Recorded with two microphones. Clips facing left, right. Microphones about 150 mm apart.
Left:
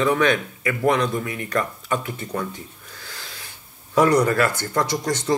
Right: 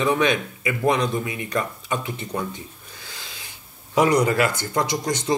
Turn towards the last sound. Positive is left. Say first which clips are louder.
# left 1 dB
turn(degrees=-15)  # may be behind; listen again after turning